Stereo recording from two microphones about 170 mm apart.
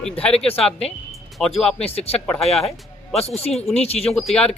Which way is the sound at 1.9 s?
35° left (ahead or behind).